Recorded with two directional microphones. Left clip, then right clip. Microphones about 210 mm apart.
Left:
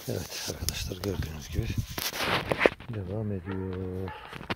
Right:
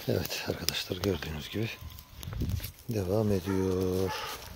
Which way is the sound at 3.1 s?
35° right (ahead or behind).